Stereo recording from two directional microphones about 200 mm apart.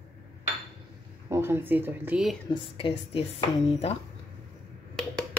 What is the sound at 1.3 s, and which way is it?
Speech, 10° right (ahead or behind).